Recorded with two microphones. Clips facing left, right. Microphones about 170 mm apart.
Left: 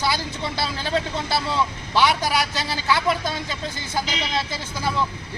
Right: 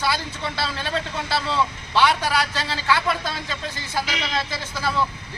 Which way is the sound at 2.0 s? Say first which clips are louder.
Even; 10° left (ahead or behind).